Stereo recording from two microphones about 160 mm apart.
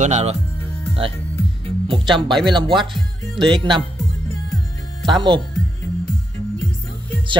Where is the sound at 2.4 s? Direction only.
30° right (ahead or behind).